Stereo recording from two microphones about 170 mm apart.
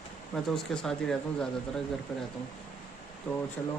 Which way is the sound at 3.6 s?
15° left (ahead or behind).